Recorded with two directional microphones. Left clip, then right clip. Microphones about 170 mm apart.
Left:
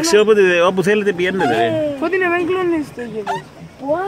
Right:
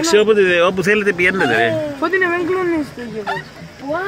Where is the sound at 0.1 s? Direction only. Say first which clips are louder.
Left 1 dB; 30° left (ahead or behind); by 2.0 s 5° left (ahead or behind).